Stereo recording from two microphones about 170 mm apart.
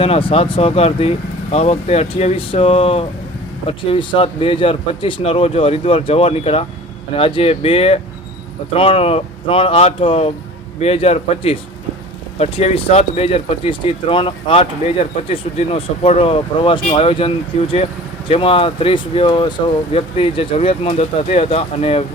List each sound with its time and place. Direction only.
0.0 s speech: 35° left (ahead or behind)